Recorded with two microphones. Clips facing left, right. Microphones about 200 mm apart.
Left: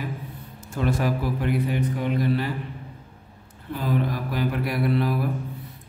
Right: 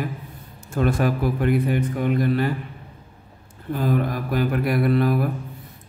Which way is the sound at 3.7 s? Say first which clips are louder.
Right 3 dB; 50° right (ahead or behind).